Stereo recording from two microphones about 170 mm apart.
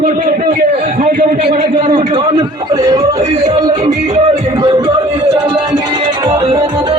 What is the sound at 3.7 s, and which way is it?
Music, 40° right (ahead or behind).